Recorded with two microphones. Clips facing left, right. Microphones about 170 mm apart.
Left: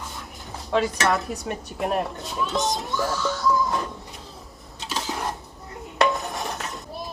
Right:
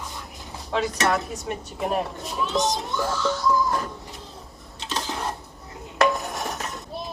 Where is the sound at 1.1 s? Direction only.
Centre (ahead or behind).